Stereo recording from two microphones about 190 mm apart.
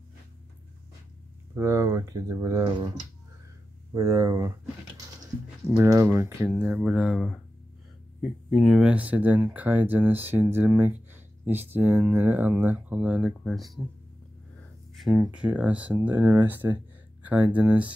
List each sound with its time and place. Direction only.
1.5 s speech: 15° right (ahead or behind)
3.9 s speech: 15° right (ahead or behind)
5.7 s speech: 15° right (ahead or behind); by 13.7 s centre (ahead or behind)
15.0 s speech: centre (ahead or behind)